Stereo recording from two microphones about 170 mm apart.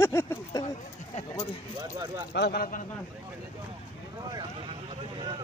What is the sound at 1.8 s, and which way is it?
Speech, 25° right (ahead or behind).